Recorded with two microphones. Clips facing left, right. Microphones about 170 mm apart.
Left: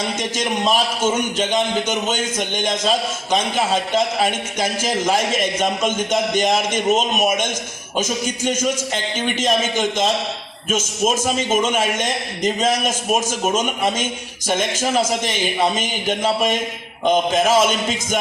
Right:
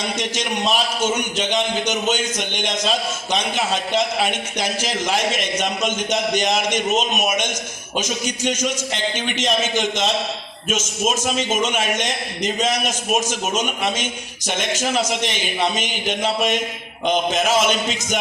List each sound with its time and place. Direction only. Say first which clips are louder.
0.2 s a man's voice: left 2 dB; 50° left (ahead or behind)